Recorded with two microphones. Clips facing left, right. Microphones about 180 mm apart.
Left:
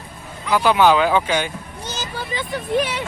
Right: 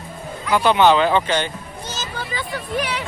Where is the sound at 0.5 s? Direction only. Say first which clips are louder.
Even; 5° left (ahead or behind).